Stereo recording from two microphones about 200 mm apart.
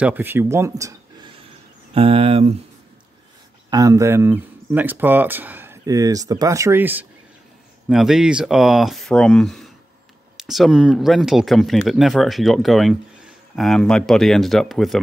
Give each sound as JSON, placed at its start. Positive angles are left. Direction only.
{"t": 0.0, "sound": "speech", "side_deg": -10}
{"t": 2.0, "sound": "speech", "side_deg": -30}
{"t": 3.7, "sound": "speech", "side_deg": -15}